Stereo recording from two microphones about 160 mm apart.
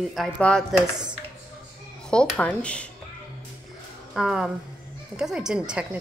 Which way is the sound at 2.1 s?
10° left (ahead or behind).